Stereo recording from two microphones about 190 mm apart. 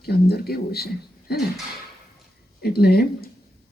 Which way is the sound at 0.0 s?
55° left (ahead or behind).